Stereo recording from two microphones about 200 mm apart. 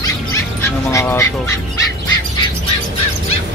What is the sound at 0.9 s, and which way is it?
Speech, 15° left (ahead or behind).